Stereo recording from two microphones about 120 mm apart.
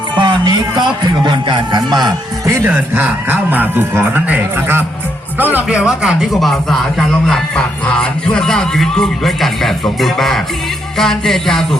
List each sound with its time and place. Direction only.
0.2 s speech: 40° right (ahead or behind)
2.6 s a man's voice: 15° right (ahead or behind); by 11.8 s 5° left (ahead or behind)